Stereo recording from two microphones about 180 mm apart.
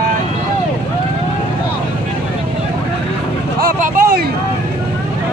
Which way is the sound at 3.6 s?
55° right (ahead or behind).